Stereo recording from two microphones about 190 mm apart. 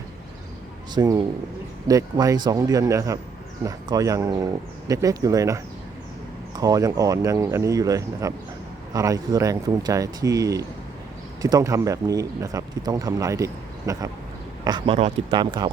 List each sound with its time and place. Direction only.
0.9 s speech: 20° right (ahead or behind)